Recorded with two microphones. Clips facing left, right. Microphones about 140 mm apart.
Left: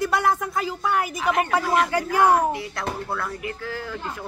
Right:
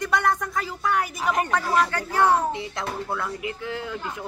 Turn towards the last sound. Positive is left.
turn(degrees=-20)  # may be behind; listen again after turning